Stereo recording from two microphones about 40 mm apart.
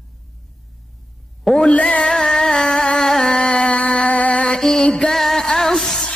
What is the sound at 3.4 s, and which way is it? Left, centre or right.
Music, left.